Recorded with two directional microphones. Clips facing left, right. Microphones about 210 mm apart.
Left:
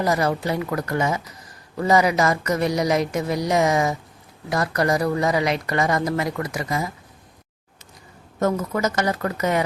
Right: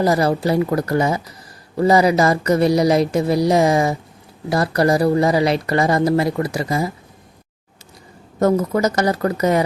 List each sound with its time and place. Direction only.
0.0 s speech: 35° right (ahead or behind)
8.4 s speech: 35° right (ahead or behind)